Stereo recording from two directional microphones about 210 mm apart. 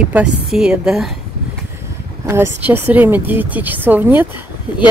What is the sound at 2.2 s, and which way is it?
Speech, 10° right (ahead or behind).